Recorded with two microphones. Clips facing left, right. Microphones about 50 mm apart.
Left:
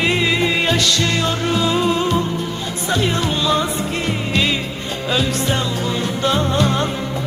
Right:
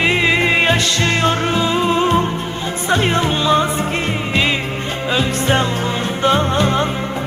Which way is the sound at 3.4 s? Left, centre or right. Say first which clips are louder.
Right 3 dB; right.